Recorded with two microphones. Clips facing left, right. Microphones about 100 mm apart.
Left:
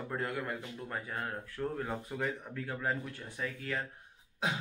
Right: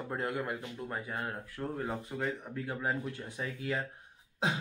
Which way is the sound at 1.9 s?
Centre (ahead or behind).